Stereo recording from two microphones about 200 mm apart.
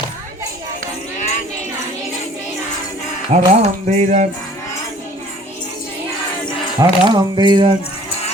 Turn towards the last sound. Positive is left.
turn(degrees=-25)  # may be behind; listen again after turning